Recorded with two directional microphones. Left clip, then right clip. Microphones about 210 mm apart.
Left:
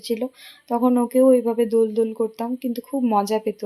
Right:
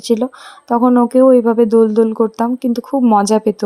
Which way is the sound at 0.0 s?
30° right (ahead or behind).